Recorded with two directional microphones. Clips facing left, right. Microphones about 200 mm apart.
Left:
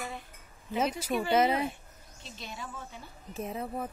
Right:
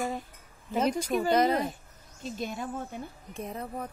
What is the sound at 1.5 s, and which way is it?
A woman's voice, 40° right (ahead or behind).